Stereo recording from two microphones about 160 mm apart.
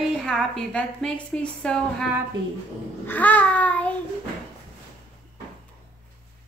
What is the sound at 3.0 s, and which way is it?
Babbling, 10° left (ahead or behind).